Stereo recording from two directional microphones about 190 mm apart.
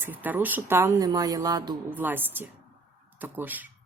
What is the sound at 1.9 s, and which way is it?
Speech, 10° right (ahead or behind).